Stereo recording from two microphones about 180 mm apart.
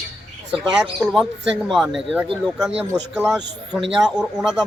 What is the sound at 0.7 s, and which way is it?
Speech, 5° right (ahead or behind).